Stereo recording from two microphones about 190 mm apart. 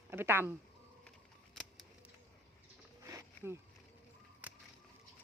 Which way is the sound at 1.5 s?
Centre (ahead or behind).